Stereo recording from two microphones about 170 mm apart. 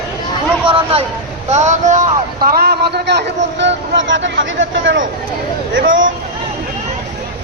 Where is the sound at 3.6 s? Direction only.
90° right.